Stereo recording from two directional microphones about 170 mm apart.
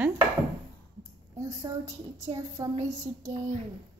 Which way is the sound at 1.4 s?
20° right (ahead or behind).